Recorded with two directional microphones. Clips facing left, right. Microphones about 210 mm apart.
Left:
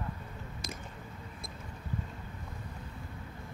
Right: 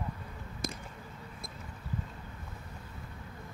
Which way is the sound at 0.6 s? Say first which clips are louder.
Right 6 dB; 55° right (ahead or behind).